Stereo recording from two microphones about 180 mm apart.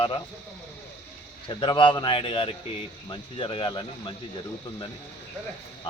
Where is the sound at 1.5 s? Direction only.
25° left (ahead or behind).